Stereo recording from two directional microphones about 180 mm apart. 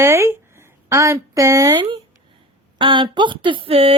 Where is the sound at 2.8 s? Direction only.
25° right (ahead or behind).